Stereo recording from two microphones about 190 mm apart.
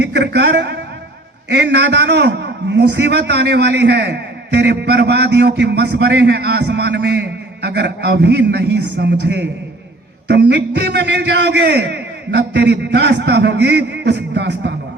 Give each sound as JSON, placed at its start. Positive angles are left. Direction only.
{"t": 0.0, "sound": "a man's voice", "side_deg": -60}